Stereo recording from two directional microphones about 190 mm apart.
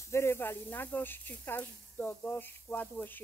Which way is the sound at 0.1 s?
15° left (ahead or behind).